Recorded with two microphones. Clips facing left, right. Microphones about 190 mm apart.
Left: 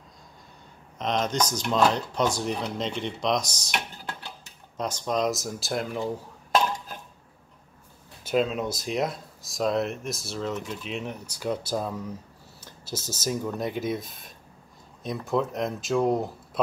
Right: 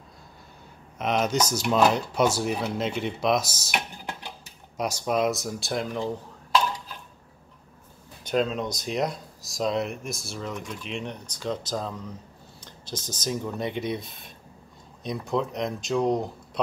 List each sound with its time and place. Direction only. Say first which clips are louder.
0.9 s speech: right 2 dB; 10° right (ahead or behind)
6.5 s dishes: left 1 dB; 50° left (ahead or behind)
8.2 s speech: even; 5° left (ahead or behind)